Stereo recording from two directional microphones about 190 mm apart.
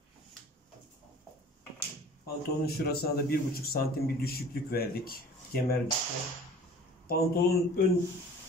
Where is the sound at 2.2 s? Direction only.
55° left (ahead or behind).